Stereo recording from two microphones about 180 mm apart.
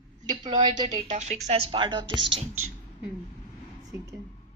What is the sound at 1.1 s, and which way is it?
Speech, 40° right (ahead or behind).